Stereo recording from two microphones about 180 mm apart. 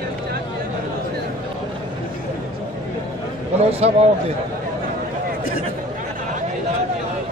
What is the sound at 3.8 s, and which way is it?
Speech, 35° right (ahead or behind).